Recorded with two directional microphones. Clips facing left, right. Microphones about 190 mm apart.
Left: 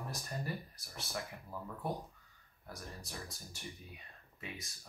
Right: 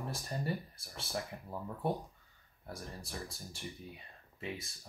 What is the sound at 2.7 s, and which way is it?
Speech, 30° right (ahead or behind).